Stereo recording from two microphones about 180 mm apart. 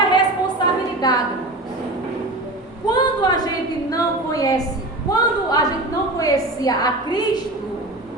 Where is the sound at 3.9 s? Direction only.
20° left (ahead or behind).